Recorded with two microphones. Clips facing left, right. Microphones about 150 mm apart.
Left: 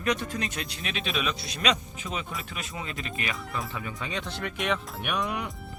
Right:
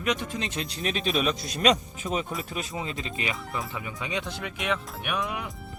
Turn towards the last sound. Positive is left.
turn(degrees=0)  # may be behind; listen again after turning